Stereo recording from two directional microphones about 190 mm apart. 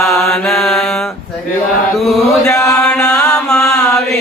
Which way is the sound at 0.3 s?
Centre (ahead or behind).